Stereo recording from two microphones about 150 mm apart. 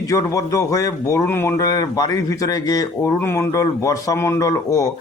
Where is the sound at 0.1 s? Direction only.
20° left (ahead or behind).